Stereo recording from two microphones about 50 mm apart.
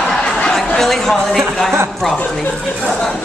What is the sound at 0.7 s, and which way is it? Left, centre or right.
A woman's voice, centre.